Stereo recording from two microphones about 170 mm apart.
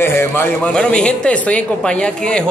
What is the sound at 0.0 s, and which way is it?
Speech, 15° left (ahead or behind).